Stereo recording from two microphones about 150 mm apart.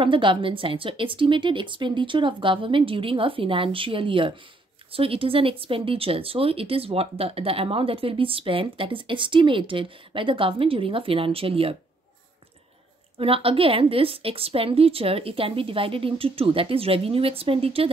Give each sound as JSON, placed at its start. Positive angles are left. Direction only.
{"t": 0.0, "sound": "speech", "side_deg": -35}
{"t": 13.2, "sound": "speech", "side_deg": -40}